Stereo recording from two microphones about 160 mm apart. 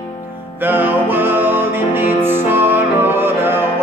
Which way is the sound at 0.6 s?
10° right (ahead or behind).